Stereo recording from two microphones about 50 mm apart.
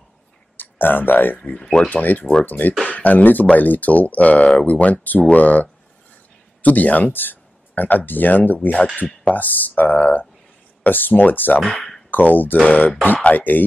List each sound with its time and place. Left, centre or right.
0.6 s speech: left
1.6 s speech: centre
1.9 s speech: left
11.6 s speech: centre
12.1 s speech: left